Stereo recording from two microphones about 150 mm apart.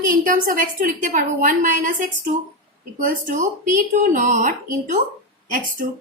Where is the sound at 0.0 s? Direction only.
65° right (ahead or behind).